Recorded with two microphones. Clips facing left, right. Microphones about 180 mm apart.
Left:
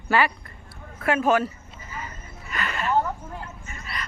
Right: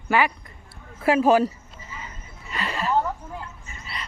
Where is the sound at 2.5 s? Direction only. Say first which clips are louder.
Right 1 dB; 30° right (ahead or behind).